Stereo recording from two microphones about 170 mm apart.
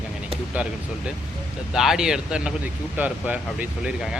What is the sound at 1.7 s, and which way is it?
Speech, 5° right (ahead or behind).